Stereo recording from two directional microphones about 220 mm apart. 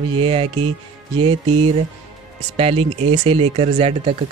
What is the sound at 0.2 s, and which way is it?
Speech, 25° right (ahead or behind).